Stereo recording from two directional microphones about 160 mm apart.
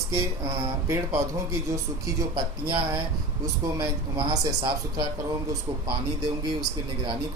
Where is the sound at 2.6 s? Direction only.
25° right (ahead or behind).